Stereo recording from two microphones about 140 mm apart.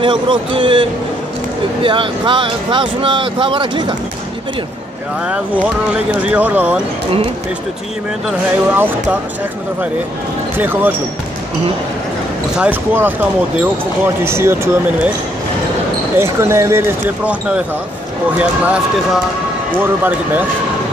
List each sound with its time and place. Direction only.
0.0 s speech: 35° right (ahead or behind)
5.2 s speech: 10° right (ahead or behind)
8.7 s speech: 15° right (ahead or behind)
10.6 s speech: 15° right (ahead or behind)
12.5 s speech: 10° right (ahead or behind)
16.2 s speech: 20° right (ahead or behind)
19.8 s speech: 15° right (ahead or behind)